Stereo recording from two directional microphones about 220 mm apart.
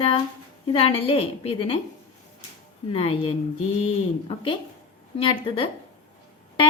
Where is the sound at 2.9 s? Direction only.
25° left (ahead or behind).